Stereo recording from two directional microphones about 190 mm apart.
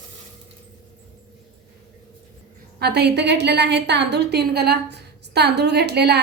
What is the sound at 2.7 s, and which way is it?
A woman's voice, 60° right (ahead or behind).